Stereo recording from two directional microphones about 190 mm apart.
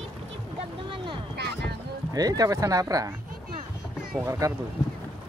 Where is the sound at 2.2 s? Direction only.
20° right (ahead or behind).